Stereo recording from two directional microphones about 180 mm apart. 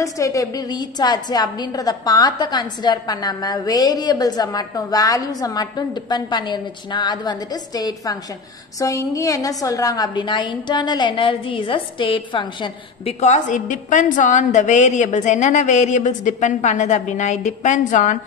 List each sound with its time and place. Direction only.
0.0 s a woman's voice: 20° left (ahead or behind)
13.2 s a woman's voice: 45° left (ahead or behind)